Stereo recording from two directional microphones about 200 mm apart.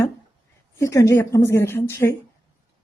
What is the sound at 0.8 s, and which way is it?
Speech, 15° left (ahead or behind).